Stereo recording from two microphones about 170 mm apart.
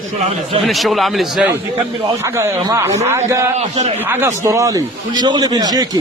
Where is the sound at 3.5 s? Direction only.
40° right (ahead or behind).